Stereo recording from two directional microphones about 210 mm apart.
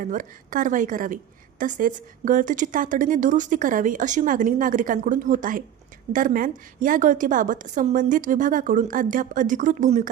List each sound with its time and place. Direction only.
0.0 s a woman's voice: 40° right (ahead or behind)